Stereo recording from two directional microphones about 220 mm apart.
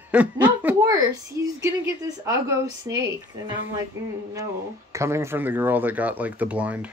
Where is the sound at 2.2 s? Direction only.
15° right (ahead or behind).